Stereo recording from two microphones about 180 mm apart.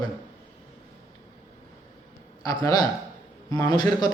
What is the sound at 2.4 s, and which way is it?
A man's voice, 20° left (ahead or behind).